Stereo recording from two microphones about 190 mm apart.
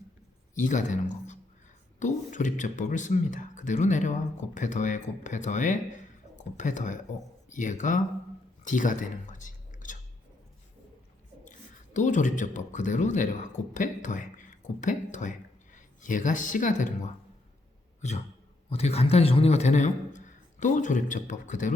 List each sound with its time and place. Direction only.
0.5 s speech: 40° left (ahead or behind)
11.9 s speech: 40° left (ahead or behind)
18.0 s a man's voice: 35° left (ahead or behind)